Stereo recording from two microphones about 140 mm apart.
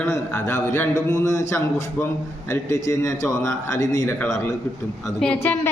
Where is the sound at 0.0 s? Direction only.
15° left (ahead or behind).